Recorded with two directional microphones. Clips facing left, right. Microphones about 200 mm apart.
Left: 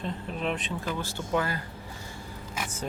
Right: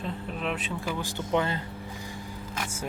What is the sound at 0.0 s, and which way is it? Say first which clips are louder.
Speech: left 1 dB; centre (ahead or behind).